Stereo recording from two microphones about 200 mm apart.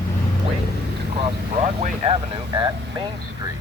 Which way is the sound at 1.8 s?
35° right (ahead or behind).